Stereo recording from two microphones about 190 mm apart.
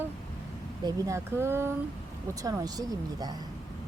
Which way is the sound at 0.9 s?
15° right (ahead or behind).